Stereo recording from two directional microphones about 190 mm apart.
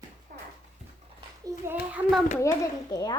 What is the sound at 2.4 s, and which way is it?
Speech, 15° left (ahead or behind).